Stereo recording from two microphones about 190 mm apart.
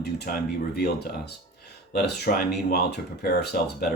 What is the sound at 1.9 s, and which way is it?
Speech, 60° left (ahead or behind).